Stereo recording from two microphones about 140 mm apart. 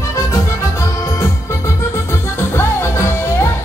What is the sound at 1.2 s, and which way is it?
Music, 20° left (ahead or behind).